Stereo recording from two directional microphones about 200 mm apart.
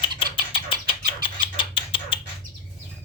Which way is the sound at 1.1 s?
25° left (ahead or behind).